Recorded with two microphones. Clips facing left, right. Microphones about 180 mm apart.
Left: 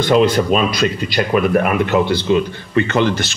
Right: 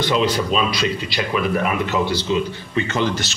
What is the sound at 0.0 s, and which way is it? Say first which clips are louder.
Speech: left 6 dB; 50° left (ahead or behind).